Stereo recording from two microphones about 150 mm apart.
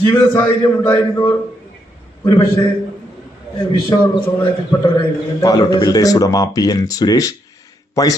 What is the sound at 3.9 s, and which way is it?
A man's voice, 30° left (ahead or behind).